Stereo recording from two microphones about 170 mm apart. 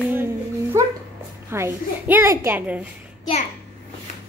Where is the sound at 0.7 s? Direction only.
15° right (ahead or behind).